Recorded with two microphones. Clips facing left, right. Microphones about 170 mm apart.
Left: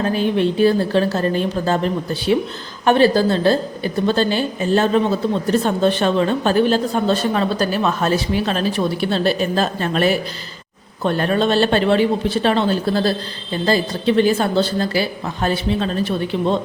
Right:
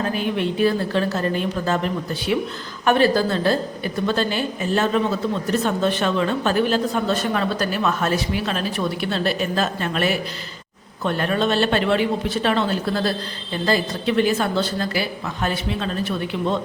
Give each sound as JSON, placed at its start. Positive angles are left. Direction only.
{"t": 0.0, "sound": "a woman's voice", "side_deg": 30}